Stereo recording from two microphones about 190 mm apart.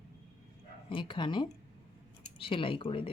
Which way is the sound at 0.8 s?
25° left (ahead or behind).